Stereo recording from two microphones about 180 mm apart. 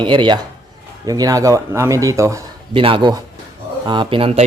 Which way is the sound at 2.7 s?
30° right (ahead or behind).